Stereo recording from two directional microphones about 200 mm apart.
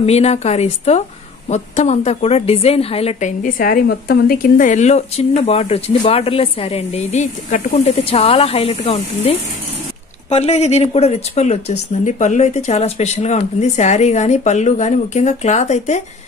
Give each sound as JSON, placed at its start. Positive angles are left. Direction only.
{"t": 0.0, "sound": "a woman's voice", "side_deg": 30}